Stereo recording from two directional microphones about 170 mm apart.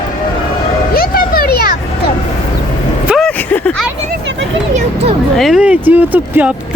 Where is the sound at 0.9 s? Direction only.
60° left (ahead or behind).